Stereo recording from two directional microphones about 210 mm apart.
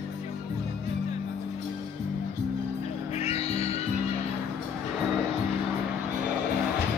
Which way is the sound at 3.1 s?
30° left (ahead or behind).